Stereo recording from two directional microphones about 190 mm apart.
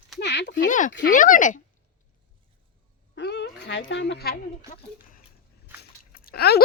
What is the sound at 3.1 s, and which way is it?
Speech, 65° left (ahead or behind).